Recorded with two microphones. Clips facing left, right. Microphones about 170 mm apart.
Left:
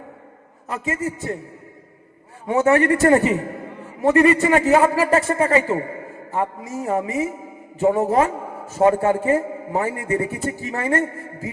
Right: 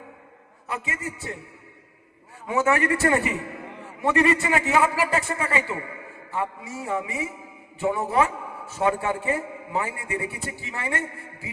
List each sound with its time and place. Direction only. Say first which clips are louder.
0.7 s a man's voice: left 7 dB; 40° left (ahead or behind)
2.5 s a man's voice: left 6 dB; 35° left (ahead or behind)